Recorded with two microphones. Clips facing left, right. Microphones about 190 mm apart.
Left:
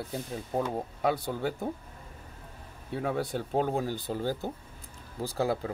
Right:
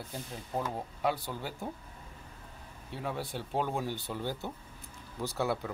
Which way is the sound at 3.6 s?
40° left (ahead or behind).